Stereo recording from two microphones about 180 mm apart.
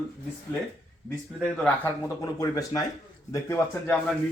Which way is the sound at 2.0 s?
20° left (ahead or behind).